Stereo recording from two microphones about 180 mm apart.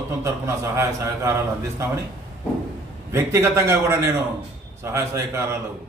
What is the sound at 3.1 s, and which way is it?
A man's voice, 15° right (ahead or behind).